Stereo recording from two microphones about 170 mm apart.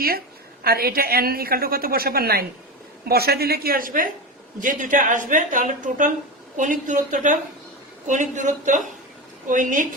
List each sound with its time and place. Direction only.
0.6 s a woman's voice: 65° right (ahead or behind)